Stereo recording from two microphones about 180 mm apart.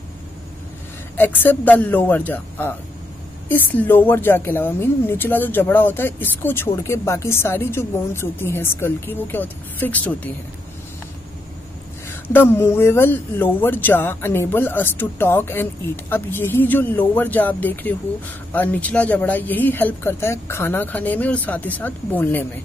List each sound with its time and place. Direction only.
1.1 s a woman's voice: 10° left (ahead or behind)
12.1 s a woman's voice: 10° left (ahead or behind)